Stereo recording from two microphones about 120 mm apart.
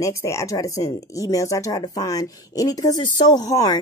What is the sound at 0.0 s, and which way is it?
Speech, 25° left (ahead or behind).